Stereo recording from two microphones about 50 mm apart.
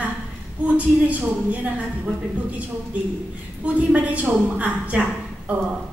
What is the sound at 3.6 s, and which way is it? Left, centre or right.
A woman's voice, right.